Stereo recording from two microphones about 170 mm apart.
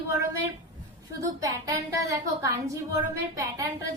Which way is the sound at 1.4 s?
20° right (ahead or behind).